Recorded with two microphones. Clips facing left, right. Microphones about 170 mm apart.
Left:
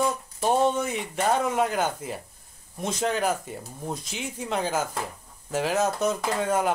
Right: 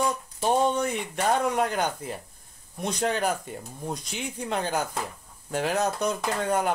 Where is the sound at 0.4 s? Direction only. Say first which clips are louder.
Left 1 dB; 5° left (ahead or behind).